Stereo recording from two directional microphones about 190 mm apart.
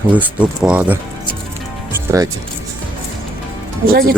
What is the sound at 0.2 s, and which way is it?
Speech, 5° right (ahead or behind).